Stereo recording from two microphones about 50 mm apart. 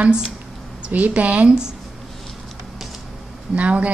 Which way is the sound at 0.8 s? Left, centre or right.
Right.